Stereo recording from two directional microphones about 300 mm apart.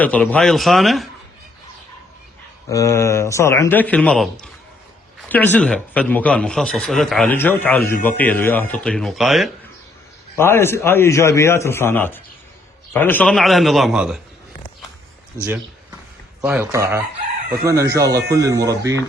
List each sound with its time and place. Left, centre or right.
0.0 s speech: centre
2.6 s a man's voice: centre
16.4 s speech: centre
18.0 s speech: right
18.4 s speech: centre